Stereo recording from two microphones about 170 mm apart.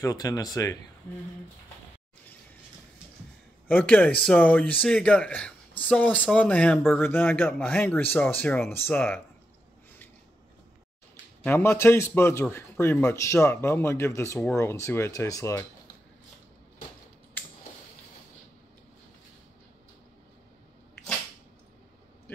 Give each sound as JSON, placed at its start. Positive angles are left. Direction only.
{"t": 0.0, "sound": "speech", "side_deg": 20}
{"t": 3.6, "sound": "speech", "side_deg": 10}
{"t": 11.4, "sound": "speech", "side_deg": 15}